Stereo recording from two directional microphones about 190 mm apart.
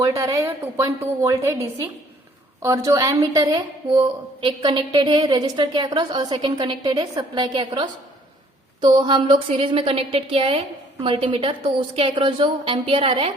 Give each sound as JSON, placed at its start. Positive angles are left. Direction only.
{"t": 0.0, "sound": "a woman's voice", "side_deg": -15}